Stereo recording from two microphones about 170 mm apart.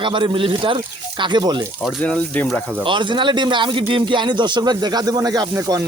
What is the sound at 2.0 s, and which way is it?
Speech, 10° left (ahead or behind).